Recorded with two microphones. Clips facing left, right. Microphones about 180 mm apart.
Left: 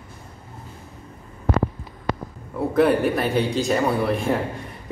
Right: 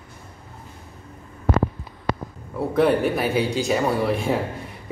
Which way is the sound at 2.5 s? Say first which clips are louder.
Left 1 dB; centre (ahead or behind).